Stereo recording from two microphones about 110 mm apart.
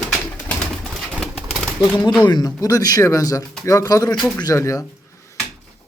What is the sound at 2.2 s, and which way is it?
Speech, 35° left (ahead or behind).